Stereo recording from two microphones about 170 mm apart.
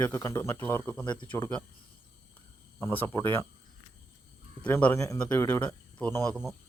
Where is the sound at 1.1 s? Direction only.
30° left (ahead or behind).